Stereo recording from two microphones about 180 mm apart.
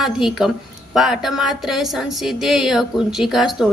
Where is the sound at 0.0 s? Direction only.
5° right (ahead or behind).